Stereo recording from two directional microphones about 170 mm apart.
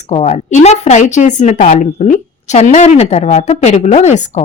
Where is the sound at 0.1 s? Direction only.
40° left (ahead or behind).